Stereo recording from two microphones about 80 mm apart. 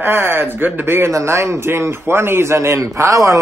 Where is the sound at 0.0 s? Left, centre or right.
Right.